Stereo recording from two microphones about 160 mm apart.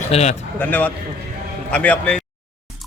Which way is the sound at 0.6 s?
10° left (ahead or behind).